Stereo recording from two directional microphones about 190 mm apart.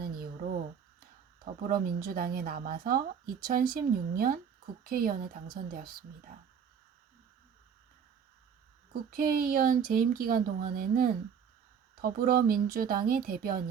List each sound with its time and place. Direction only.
0.0 s a sound: 50° right (ahead or behind)
1.6 s speech: 50° right (ahead or behind)
8.9 s speech: 50° right (ahead or behind)